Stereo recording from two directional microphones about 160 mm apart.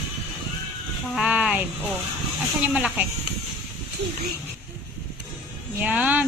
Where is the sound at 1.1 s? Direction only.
5° right (ahead or behind).